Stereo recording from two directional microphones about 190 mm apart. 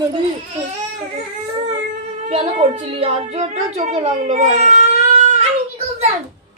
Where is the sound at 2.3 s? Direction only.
35° right (ahead or behind).